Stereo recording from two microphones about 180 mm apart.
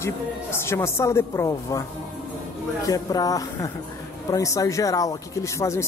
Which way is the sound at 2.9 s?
20° left (ahead or behind).